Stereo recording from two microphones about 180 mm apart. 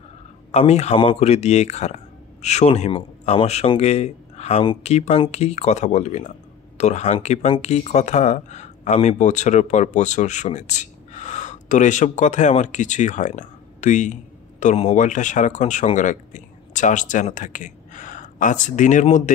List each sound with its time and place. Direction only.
0.5 s speech: 35° left (ahead or behind)